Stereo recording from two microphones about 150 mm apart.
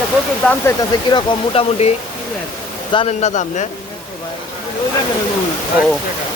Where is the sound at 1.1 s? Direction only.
40° left (ahead or behind).